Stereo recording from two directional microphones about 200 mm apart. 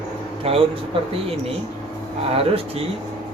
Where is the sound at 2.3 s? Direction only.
30° right (ahead or behind).